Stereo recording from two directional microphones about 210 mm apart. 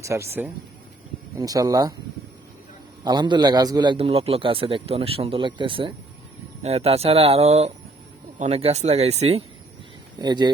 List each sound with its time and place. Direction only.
0.0 s speech: 15° right (ahead or behind)
3.0 s a man's voice: 20° right (ahead or behind)
10.2 s a man's voice: 20° right (ahead or behind)